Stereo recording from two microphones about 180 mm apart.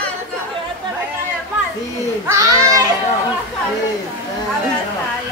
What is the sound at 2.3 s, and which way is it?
Children playing, 15° right (ahead or behind).